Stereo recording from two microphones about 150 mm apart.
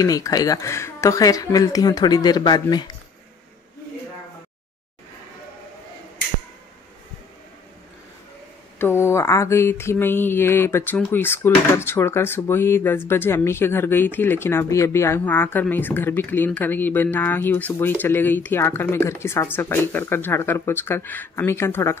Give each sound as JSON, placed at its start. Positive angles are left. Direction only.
{"t": 0.0, "sound": "speech", "side_deg": 25}
{"t": 8.7, "sound": "mantra", "side_deg": 15}